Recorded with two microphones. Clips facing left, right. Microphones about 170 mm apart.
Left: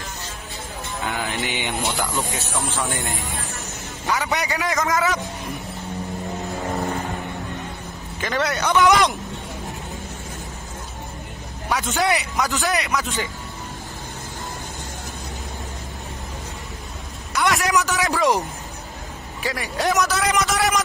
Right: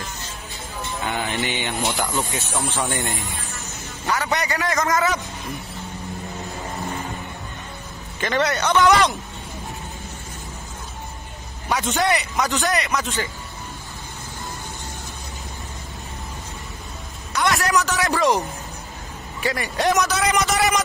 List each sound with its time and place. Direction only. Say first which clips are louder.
1.0 s music: right 1 dB; centre (ahead or behind)
1.5 s a man's voice: even; 15° left (ahead or behind)
1.9 s a man's voice: right 1 dB; centre (ahead or behind)
4.2 s a sound: even; centre (ahead or behind)
8.2 s a man's voice: right 2 dB; centre (ahead or behind)
8.8 s a man's voice: even; 15° left (ahead or behind)
11.7 s a man's voice: even; centre (ahead or behind)
17.6 s a man's voice: even; 15° left (ahead or behind)
18.0 s a man's voice: right 1 dB; centre (ahead or behind)
19.4 s a man's voice: right 2 dB; centre (ahead or behind)